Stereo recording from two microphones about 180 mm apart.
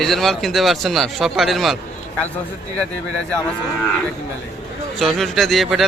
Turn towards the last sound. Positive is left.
turn(degrees=0)  # may be behind; listen again after turning